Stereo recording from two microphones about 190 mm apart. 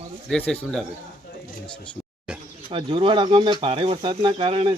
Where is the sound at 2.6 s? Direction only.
25° right (ahead or behind).